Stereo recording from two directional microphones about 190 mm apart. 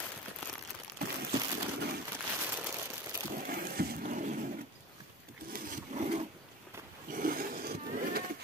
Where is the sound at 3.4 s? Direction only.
50° right (ahead or behind).